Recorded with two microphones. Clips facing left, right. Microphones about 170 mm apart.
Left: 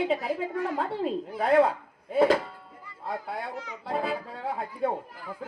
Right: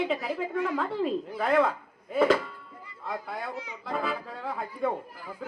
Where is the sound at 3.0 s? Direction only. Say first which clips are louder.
Left 1 dB; 35° left (ahead or behind).